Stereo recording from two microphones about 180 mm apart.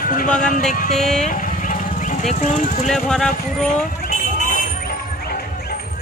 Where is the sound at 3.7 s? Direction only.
40° left (ahead or behind).